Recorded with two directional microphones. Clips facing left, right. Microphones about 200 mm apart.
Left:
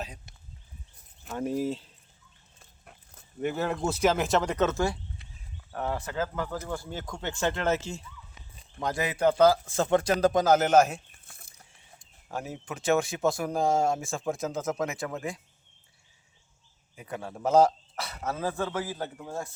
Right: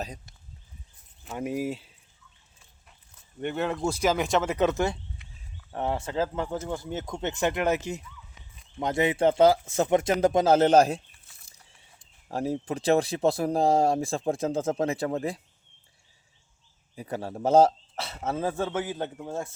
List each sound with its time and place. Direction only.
1.4 s speech: 10° right (ahead or behind)
3.4 s speech: centre (ahead or behind); by 4.9 s 20° right (ahead or behind)
5.2 s a sound: 35° left (ahead or behind)
5.7 s speech: 25° right (ahead or behind)
11.3 s a sound: 50° left (ahead or behind)
12.3 s speech: 35° right (ahead or behind)
16.9 s speech: 35° right (ahead or behind)